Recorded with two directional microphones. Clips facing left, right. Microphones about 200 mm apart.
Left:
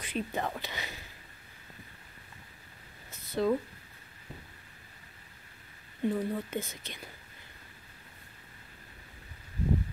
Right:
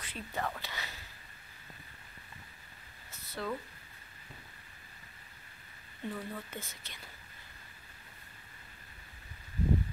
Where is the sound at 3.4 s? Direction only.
20° left (ahead or behind).